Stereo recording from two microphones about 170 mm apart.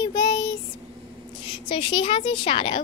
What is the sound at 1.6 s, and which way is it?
A woman's voice, 30° left (ahead or behind).